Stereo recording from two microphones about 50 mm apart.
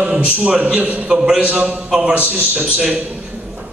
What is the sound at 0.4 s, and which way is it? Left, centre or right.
A man's voice, right.